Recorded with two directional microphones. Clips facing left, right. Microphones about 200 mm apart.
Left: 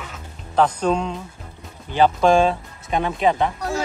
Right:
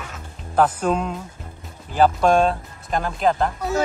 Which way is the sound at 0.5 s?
5° right (ahead or behind).